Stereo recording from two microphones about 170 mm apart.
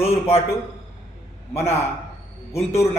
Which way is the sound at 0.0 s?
35° left (ahead or behind).